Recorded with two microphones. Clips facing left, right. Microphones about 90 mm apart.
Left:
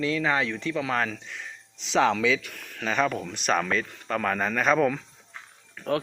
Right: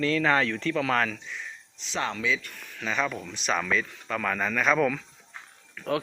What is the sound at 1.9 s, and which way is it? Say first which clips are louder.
Speech: left 7 dB; 90° left.